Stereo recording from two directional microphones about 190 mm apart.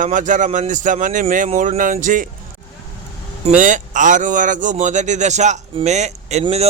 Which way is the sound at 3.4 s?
40° right (ahead or behind).